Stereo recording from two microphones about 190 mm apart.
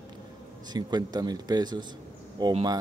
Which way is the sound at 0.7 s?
20° right (ahead or behind).